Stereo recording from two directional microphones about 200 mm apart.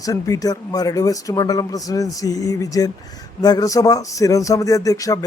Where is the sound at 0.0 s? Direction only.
15° left (ahead or behind).